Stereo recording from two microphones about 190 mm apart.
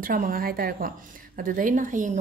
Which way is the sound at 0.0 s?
50° right (ahead or behind).